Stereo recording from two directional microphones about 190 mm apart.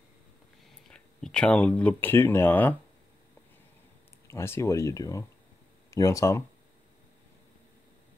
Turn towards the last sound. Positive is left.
turn(degrees=15)  # may be behind; listen again after turning